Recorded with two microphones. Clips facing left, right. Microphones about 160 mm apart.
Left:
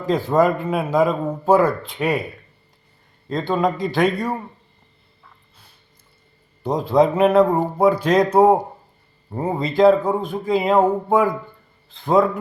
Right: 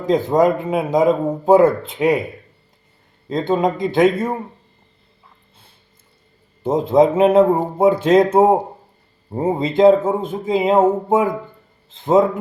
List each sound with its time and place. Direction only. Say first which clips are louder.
0.0 s a man's voice: right 2 dB; 20° right (ahead or behind)
3.2 s a man's voice: right 2 dB; 20° right (ahead or behind)
6.6 s a man's voice: right 3 dB; 25° right (ahead or behind)